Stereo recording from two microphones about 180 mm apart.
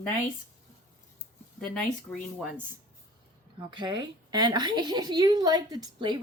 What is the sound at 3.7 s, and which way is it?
Speech, 25° right (ahead or behind).